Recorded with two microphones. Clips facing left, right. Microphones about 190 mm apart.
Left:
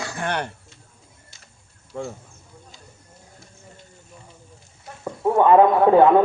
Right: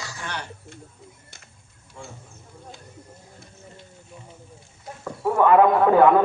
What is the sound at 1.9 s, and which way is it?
Speech, 60° left (ahead or behind).